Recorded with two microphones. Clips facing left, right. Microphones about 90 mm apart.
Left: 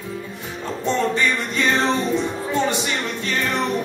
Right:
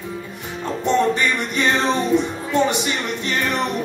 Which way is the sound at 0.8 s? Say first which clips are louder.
Right 2 dB; 15° right (ahead or behind).